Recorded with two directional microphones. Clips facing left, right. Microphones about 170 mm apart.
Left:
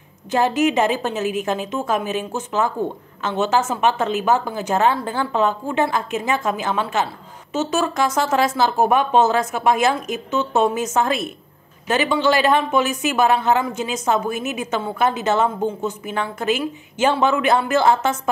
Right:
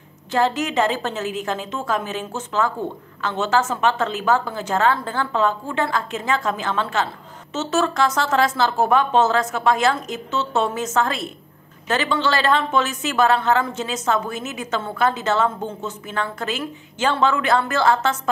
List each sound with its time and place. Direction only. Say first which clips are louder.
0.3 s speech: left 3 dB; 15° left (ahead or behind)